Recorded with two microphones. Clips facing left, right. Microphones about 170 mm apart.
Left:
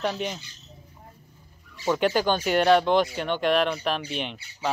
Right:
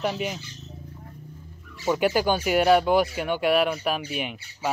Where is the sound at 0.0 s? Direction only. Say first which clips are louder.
Right 1 dB; 5° right (ahead or behind).